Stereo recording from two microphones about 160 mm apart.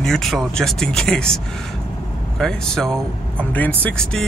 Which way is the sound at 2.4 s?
Centre (ahead or behind).